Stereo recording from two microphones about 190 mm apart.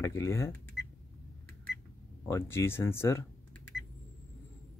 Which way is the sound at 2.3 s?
15° left (ahead or behind).